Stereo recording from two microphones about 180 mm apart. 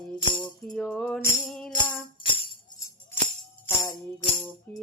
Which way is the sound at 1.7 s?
25° left (ahead or behind).